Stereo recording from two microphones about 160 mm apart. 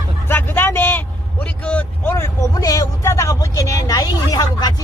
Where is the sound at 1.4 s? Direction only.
10° left (ahead or behind).